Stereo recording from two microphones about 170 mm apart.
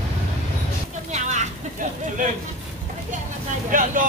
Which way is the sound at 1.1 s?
45° right (ahead or behind).